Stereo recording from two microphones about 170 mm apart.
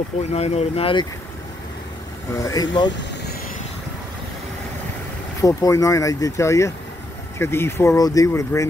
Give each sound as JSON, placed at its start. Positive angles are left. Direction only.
{"t": 0.3, "sound": "speech", "side_deg": 35}
{"t": 2.3, "sound": "speech", "side_deg": 20}
{"t": 5.4, "sound": "speech", "side_deg": 20}